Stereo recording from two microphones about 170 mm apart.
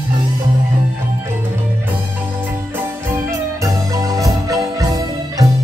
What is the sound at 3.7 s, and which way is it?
Music, 20° right (ahead or behind).